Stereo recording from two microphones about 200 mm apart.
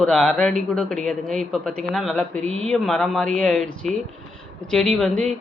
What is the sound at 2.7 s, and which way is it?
Speech, 5° left (ahead or behind).